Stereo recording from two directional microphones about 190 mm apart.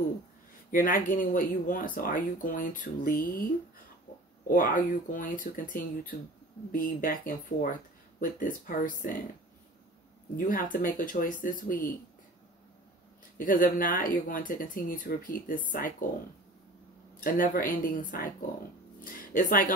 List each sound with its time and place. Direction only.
0.7 s speech: 45° left (ahead or behind)
10.3 s speech: 45° left (ahead or behind)
13.4 s speech: 45° left (ahead or behind)
17.2 s speech: 45° left (ahead or behind)